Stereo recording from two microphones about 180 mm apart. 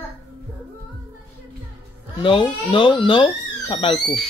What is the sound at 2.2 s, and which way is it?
Speech, 30° left (ahead or behind).